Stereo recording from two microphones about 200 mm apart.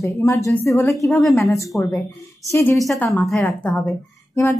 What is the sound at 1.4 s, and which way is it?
Speech, 15° left (ahead or behind).